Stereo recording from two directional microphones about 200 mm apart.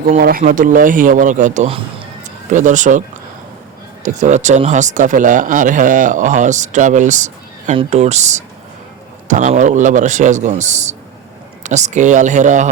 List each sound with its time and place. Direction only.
0.1 s speech: 45° right (ahead or behind); by 2.0 s 30° right (ahead or behind)
2.5 s speech: 40° right (ahead or behind)
4.0 s speech: 35° right (ahead or behind)